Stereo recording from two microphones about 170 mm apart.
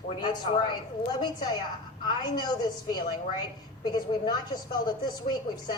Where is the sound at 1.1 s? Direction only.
25° left (ahead or behind).